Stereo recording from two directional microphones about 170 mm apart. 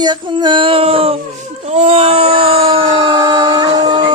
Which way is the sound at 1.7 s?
40° right (ahead or behind).